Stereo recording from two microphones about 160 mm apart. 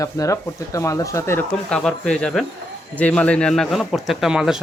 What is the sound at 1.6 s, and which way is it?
A man's voice, 5° left (ahead or behind).